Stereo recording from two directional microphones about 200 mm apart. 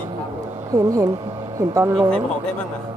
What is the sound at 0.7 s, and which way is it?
Speech, 15° right (ahead or behind).